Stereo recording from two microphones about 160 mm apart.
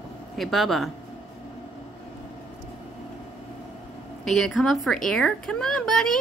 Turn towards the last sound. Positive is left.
turn(degrees=0)  # may be behind; listen again after turning